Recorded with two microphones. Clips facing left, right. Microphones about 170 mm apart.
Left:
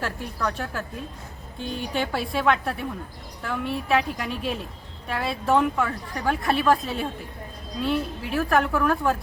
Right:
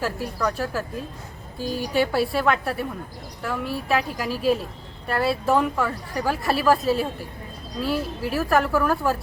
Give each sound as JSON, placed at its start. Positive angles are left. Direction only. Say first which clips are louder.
{"t": 0.0, "sound": "a woman's voice", "louder": "right 3 dB", "side_deg": -5}
{"t": 1.9, "sound": "a woman's voice", "louder": "right 6 dB", "side_deg": -5}